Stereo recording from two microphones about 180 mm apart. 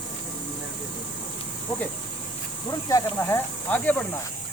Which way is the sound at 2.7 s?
15° left (ahead or behind).